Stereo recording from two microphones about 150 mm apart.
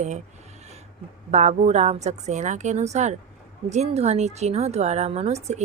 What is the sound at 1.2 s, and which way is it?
Speech, 50° right (ahead or behind).